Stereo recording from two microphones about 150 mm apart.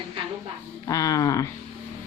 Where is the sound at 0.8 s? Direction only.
25° left (ahead or behind).